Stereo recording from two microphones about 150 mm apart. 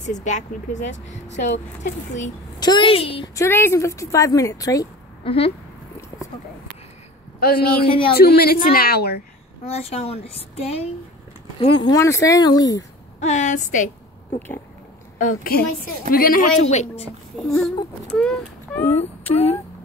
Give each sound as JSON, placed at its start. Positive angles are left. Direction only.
{"t": 0.0, "sound": "speech", "side_deg": 55}
{"t": 2.6, "sound": "a woman's voice", "side_deg": 30}
{"t": 3.3, "sound": "a woman's voice", "side_deg": 15}
{"t": 5.2, "sound": "speech", "side_deg": 40}
{"t": 7.3, "sound": "a woman's voice", "side_deg": 85}
{"t": 7.8, "sound": "a woman's voice", "side_deg": 35}
{"t": 8.1, "sound": "a woman's voice", "side_deg": 90}
{"t": 9.7, "sound": "a woman's voice", "side_deg": 45}
{"t": 11.9, "sound": "a woman's voice", "side_deg": 20}
{"t": 13.2, "sound": "a woman's voice", "side_deg": 50}
{"t": 15.1, "sound": "a woman's voice", "side_deg": 65}
{"t": 16.7, "sound": "speech", "side_deg": 45}
{"t": 17.5, "sound": "speech", "side_deg": 0}
{"t": 18.9, "sound": "speech", "side_deg": 45}